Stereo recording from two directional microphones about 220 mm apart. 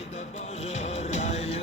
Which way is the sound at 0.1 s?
30° left (ahead or behind).